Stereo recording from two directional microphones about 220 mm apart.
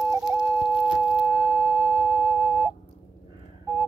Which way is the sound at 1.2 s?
10° right (ahead or behind).